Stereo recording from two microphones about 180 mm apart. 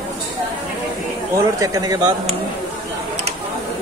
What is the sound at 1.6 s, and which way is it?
Speech, 20° right (ahead or behind).